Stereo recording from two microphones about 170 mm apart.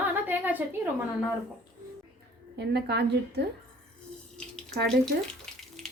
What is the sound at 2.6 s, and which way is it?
Speech, 75° right (ahead or behind).